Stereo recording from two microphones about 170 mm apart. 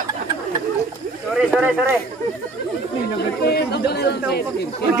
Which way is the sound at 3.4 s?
75° left (ahead or behind).